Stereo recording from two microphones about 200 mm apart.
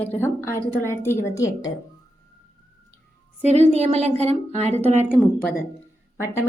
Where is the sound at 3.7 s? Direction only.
30° right (ahead or behind).